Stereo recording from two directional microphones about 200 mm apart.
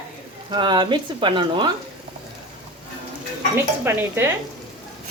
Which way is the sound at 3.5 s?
10° right (ahead or behind).